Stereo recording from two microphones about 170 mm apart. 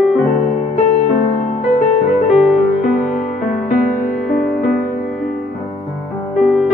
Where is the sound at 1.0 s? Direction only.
45° left (ahead or behind).